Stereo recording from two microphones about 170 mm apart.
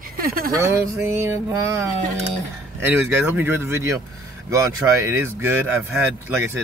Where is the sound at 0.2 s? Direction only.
60° right (ahead or behind).